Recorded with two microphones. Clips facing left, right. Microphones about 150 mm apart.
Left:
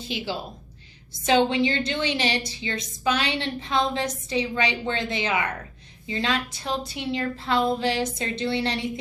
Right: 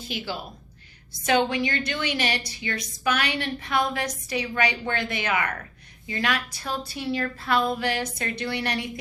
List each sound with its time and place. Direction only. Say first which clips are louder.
1.3 s a woman's voice: left 2 dB; 25° left (ahead or behind)